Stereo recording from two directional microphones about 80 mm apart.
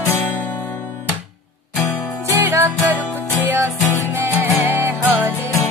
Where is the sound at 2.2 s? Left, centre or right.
Right.